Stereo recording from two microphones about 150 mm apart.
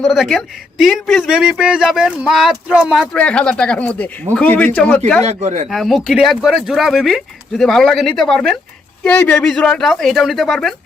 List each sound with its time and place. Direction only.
0.0 s speech: centre (ahead or behind)
5.2 s speech: 45° right (ahead or behind)
5.6 s speech: centre (ahead or behind)